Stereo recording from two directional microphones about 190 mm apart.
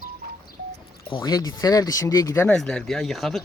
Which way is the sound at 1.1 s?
25° left (ahead or behind).